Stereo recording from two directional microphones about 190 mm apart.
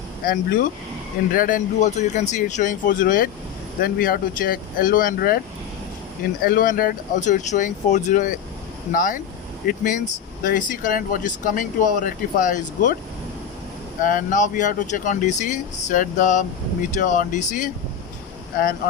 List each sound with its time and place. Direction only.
0.3 s speech: 50° left (ahead or behind)
6.4 s speech: 45° left (ahead or behind)
14.0 s speech: 45° left (ahead or behind)